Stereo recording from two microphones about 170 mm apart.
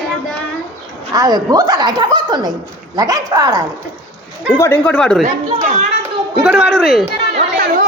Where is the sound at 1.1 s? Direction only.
20° right (ahead or behind).